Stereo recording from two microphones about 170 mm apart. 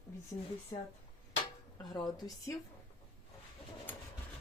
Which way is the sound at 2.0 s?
20° left (ahead or behind).